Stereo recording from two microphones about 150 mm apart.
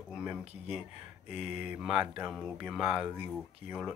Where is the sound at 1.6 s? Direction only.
5° right (ahead or behind).